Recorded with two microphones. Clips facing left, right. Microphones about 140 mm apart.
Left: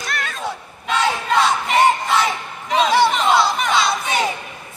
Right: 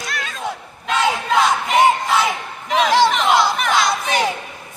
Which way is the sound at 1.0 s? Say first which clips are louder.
Right 1 dB; 5° right (ahead or behind).